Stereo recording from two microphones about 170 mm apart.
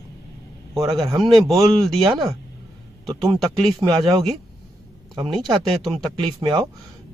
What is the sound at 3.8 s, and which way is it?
Speech, 25° right (ahead or behind).